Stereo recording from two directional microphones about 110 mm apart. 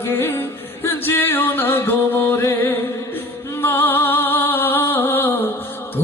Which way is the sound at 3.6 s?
20° left (ahead or behind).